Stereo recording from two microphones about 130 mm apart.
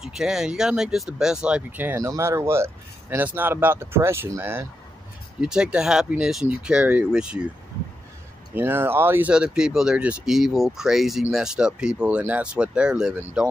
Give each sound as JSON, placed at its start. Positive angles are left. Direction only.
{"t": 0.0, "sound": "speech", "side_deg": -5}
{"t": 5.4, "sound": "speech", "side_deg": -5}
{"t": 8.5, "sound": "speech", "side_deg": -15}
{"t": 9.3, "sound": "speech", "side_deg": -5}